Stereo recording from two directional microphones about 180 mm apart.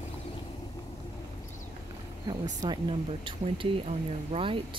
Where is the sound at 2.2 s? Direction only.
20° right (ahead or behind).